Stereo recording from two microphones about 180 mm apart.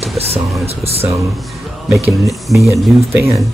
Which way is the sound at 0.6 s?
35° right (ahead or behind).